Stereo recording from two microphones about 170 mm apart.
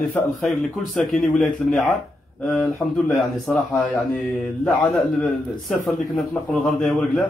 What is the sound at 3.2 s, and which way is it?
A man's voice, centre (ahead or behind).